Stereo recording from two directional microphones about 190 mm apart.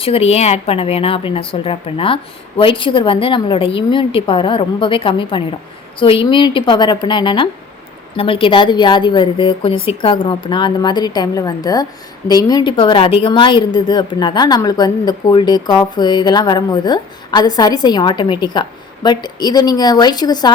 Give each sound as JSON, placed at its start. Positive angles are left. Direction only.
{"t": 0.0, "sound": "speech", "side_deg": 30}